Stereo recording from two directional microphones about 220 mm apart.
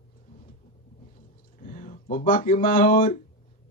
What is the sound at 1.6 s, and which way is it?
A man's voice, 40° left (ahead or behind).